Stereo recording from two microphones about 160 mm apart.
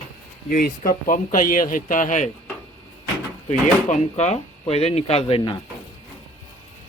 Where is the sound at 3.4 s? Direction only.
45° left (ahead or behind).